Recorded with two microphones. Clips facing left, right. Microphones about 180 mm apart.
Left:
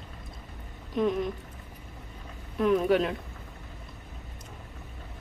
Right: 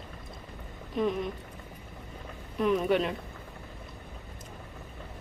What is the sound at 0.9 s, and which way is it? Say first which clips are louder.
Speech: left 2 dB; centre (ahead or behind).